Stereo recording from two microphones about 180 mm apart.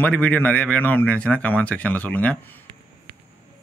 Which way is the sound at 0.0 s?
10° left (ahead or behind).